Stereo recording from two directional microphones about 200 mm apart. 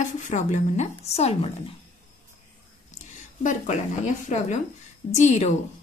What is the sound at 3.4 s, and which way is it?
A woman's voice, 40° left (ahead or behind).